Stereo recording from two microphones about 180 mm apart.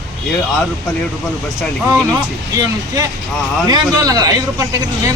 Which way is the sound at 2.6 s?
20° right (ahead or behind).